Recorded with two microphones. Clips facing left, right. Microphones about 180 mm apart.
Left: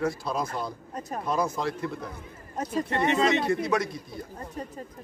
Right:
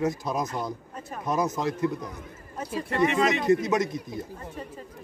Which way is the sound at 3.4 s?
20° right (ahead or behind).